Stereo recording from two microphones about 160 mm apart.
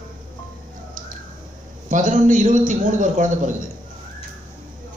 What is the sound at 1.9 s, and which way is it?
A man's voice, 50° right (ahead or behind).